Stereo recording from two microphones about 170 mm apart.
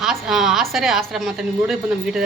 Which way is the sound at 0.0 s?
Centre (ahead or behind).